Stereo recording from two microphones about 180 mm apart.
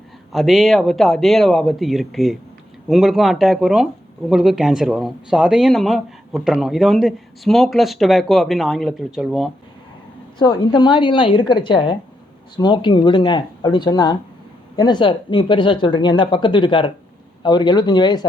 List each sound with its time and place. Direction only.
0.3 s speech: centre (ahead or behind)
10.3 s speech: 20° left (ahead or behind)